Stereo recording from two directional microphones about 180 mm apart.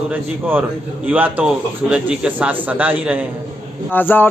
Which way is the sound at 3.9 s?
10° left (ahead or behind).